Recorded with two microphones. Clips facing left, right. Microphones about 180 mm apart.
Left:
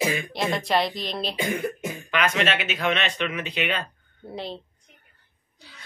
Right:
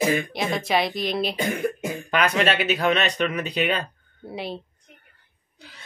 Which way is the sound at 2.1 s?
40° right (ahead or behind).